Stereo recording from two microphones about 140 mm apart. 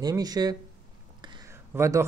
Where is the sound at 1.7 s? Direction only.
20° right (ahead or behind).